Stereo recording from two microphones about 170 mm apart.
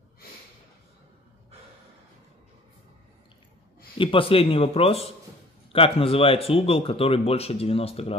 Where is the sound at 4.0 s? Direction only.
30° left (ahead or behind).